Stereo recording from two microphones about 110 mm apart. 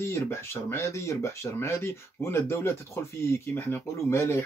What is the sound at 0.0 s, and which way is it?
Speech, 25° left (ahead or behind).